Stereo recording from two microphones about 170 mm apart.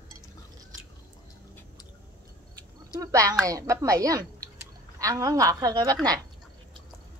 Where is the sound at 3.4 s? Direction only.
20° right (ahead or behind).